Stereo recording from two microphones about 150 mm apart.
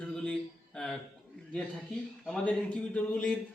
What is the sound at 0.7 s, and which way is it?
Speech, 5° left (ahead or behind).